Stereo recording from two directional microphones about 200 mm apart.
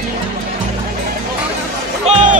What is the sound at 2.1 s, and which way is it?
Music, 35° right (ahead or behind).